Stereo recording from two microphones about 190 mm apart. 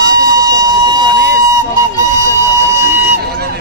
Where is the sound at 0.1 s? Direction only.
20° right (ahead or behind).